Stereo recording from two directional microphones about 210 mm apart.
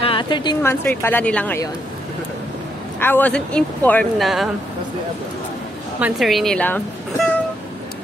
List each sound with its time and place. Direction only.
0.0 s speech: 25° left (ahead or behind)
0.6 s speech: 10° left (ahead or behind)
3.0 s speech: 10° left (ahead or behind)
5.9 s speech: 5° right (ahead or behind)